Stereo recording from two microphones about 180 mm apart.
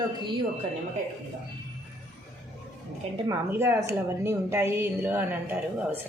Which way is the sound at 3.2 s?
15° right (ahead or behind).